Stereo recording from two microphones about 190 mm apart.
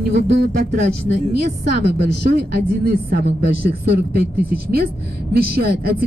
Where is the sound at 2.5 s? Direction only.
55° right (ahead or behind).